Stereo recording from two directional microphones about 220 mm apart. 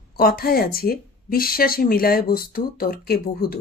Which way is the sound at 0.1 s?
40° left (ahead or behind).